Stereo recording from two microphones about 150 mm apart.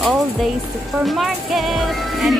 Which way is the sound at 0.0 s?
Centre (ahead or behind).